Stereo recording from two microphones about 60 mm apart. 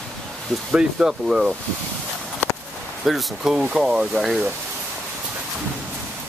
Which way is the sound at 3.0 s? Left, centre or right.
Centre.